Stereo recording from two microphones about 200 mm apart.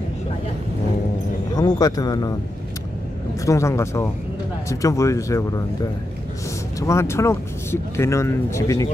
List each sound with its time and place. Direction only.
1.8 s speech: 20° left (ahead or behind)
3.4 s speech: 15° left (ahead or behind)
6.8 s speech: 15° left (ahead or behind)